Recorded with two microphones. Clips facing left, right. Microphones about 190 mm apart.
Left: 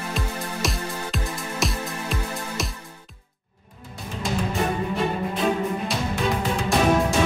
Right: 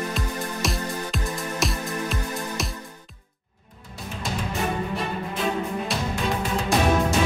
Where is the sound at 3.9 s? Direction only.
Centre (ahead or behind).